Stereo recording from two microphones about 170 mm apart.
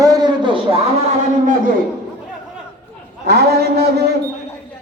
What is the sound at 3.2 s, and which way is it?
Speech, 70° right (ahead or behind).